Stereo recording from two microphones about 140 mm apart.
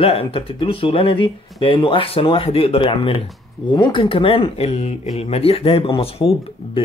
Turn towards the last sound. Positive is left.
turn(degrees=45)  # may be behind; listen again after turning